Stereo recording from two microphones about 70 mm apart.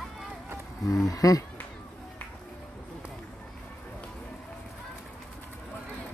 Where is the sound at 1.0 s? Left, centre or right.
Left.